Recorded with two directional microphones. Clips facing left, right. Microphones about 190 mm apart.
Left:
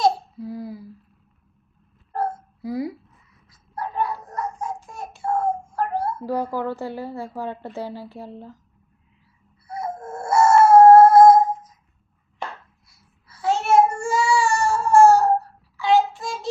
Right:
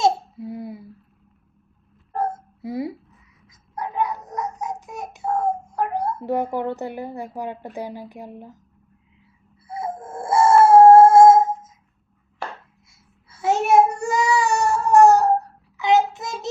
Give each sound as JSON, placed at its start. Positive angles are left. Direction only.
{"t": 0.0, "sound": "a sound", "side_deg": -25}
{"t": 2.1, "sound": "babbling", "side_deg": -20}
{"t": 3.8, "sound": "a sound", "side_deg": -15}
{"t": 4.3, "sound": "babbling", "side_deg": -20}
{"t": 4.7, "sound": "child singing", "side_deg": -15}
{"t": 5.2, "sound": "child singing", "side_deg": -5}
{"t": 5.7, "sound": "a child's voice", "side_deg": -20}
{"t": 9.6, "sound": "crying", "side_deg": -25}
{"t": 13.2, "sound": "a sound", "side_deg": -20}
{"t": 15.8, "sound": "child singing", "side_deg": -20}